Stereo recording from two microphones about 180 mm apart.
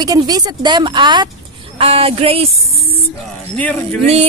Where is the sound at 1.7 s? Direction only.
30° right (ahead or behind).